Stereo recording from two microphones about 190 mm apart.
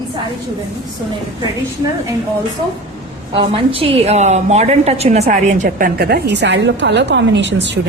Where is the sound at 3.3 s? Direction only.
30° right (ahead or behind); by 7.7 s 70° right (ahead or behind).